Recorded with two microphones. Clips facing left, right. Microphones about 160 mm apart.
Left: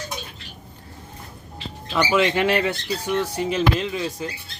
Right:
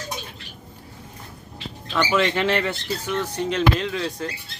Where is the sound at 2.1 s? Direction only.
15° left (ahead or behind).